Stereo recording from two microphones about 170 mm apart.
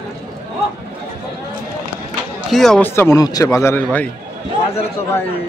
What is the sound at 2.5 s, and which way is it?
Speech, centre (ahead or behind).